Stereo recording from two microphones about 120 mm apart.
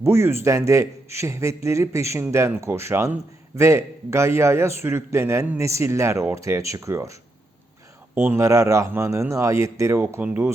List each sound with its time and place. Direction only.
0.0 s a man's voice: 20° right (ahead or behind)